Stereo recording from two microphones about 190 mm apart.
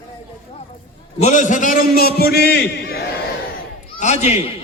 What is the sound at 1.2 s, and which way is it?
A man's voice, 40° left (ahead or behind).